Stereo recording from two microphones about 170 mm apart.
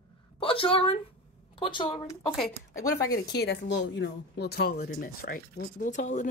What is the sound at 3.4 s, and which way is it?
Speech, 85° left.